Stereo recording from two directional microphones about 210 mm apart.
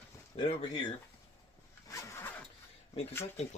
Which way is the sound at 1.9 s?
15° left (ahead or behind).